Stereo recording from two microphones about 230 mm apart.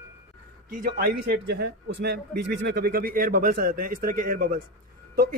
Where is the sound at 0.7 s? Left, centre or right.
Right.